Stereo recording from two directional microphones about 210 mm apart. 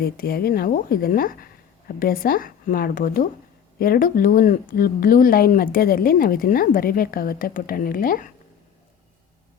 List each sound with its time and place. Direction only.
0.0 s a woman's voice: 45° left (ahead or behind)